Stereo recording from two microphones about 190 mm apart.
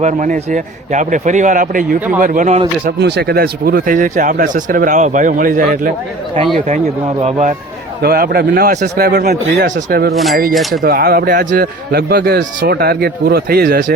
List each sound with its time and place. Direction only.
0.0 s a man's voice: 40° right (ahead or behind)
2.8 s speech: 60° right (ahead or behind); by 5.9 s 45° right (ahead or behind)
7.2 s a man's voice: 35° right (ahead or behind)
8.0 s a man's voice: 55° right (ahead or behind)
10.5 s speech: centre (ahead or behind)
10.8 s a man's voice: 50° right (ahead or behind)
12.6 s speech: 55° right (ahead or behind)